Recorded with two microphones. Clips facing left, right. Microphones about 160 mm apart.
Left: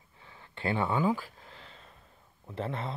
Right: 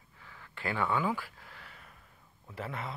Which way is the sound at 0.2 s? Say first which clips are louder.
Left 4 dB; 25° left (ahead or behind).